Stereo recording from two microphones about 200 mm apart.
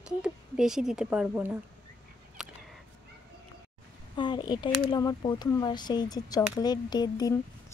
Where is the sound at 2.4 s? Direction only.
Centre (ahead or behind).